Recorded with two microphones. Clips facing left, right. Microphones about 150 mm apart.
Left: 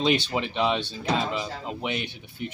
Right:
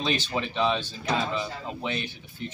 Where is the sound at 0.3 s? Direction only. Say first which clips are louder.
Left 1 dB; 20° left (ahead or behind).